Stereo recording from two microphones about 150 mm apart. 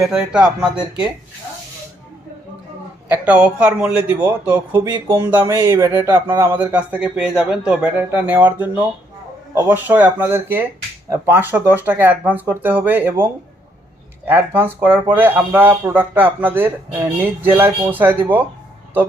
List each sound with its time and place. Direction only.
0.0 s speech: 5° right (ahead or behind)
3.1 s speech: 10° right (ahead or behind)
14.3 s speech: 15° right (ahead or behind)